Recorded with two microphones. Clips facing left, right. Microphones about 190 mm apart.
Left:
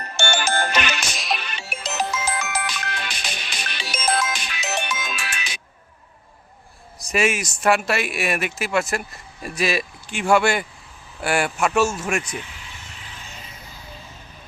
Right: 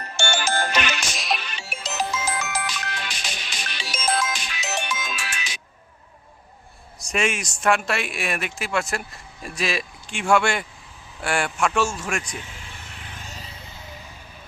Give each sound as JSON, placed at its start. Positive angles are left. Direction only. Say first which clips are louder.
{"t": 0.2, "sound": "music", "louder": "left 2 dB", "side_deg": 55}
{"t": 1.1, "sound": "music", "louder": "even", "side_deg": 0}
{"t": 1.4, "sound": "music", "louder": "left 2 dB", "side_deg": 60}
{"t": 7.0, "sound": "speech", "louder": "left 3 dB", "side_deg": 5}
{"t": 12.9, "sound": "a sound", "louder": "right 1 dB", "side_deg": -55}